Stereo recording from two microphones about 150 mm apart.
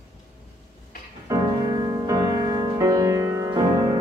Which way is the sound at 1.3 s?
20° right (ahead or behind).